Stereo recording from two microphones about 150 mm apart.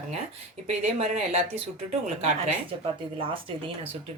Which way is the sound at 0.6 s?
45° right (ahead or behind).